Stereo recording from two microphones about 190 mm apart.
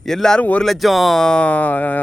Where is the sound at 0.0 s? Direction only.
Centre (ahead or behind).